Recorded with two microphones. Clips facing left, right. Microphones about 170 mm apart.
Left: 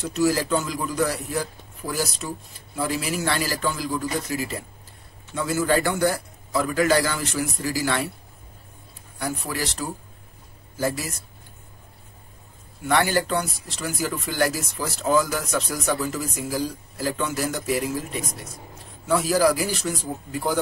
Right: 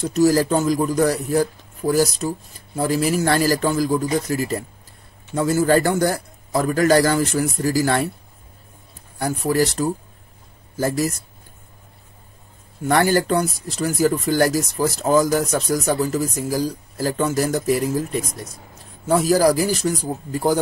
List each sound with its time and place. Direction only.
0.0 s a man's voice: 40° right (ahead or behind)
9.2 s a man's voice: 45° right (ahead or behind)
12.8 s a man's voice: 45° right (ahead or behind)